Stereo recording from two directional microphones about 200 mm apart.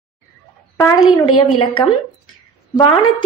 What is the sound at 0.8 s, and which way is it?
Speech, 15° left (ahead or behind).